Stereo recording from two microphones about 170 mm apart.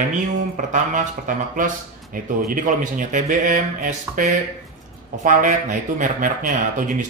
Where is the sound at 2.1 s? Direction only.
55° right (ahead or behind).